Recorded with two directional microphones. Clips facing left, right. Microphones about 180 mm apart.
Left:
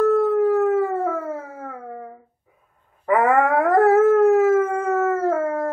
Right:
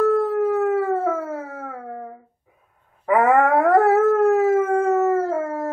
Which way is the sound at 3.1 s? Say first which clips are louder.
Right 1 dB; centre (ahead or behind).